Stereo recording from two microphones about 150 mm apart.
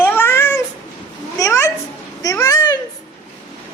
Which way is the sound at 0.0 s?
15° left (ahead or behind).